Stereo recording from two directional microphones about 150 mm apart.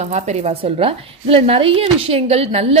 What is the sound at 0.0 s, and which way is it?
A woman's voice, 50° right (ahead or behind).